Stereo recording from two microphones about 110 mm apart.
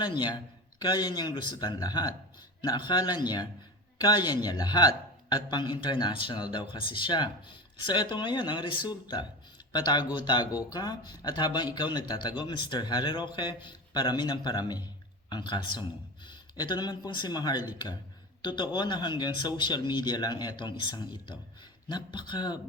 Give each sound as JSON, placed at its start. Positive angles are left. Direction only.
{"t": 0.0, "sound": "speech", "side_deg": 40}